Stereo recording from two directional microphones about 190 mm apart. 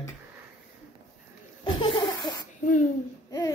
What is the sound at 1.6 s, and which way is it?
Laughter, 25° left (ahead or behind).